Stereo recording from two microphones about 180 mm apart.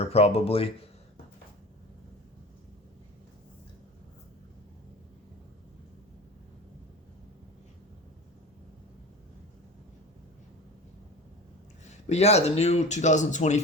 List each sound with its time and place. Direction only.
0.0 s speech: 35° left (ahead or behind)
11.9 s speech: 35° left (ahead or behind)